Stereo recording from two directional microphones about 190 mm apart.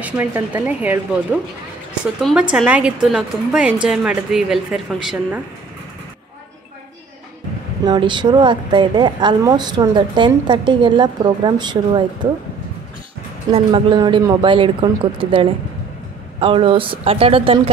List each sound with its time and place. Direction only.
0.0 s a woman's voice: 10° right (ahead or behind)
2.5 s a woman's voice: 5° right (ahead or behind)
7.8 s a woman's voice: 25° right (ahead or behind)
13.5 s a woman's voice: 30° right (ahead or behind)